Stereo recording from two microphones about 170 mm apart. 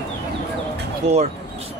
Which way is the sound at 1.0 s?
40° right (ahead or behind).